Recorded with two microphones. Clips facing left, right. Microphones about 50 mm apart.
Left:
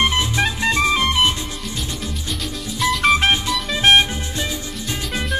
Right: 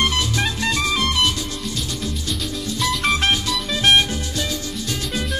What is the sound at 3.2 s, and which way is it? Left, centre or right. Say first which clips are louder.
Music: left 2 dB; centre.